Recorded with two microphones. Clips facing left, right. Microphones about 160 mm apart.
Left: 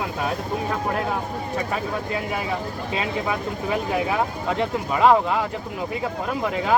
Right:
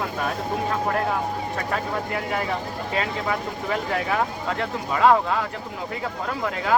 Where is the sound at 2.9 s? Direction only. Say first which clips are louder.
Even; 15° left (ahead or behind).